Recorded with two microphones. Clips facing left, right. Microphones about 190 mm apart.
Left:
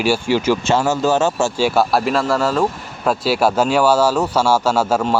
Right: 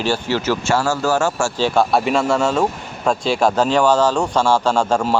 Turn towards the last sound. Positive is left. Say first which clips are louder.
# even
turn(degrees=5)  # may be behind; listen again after turning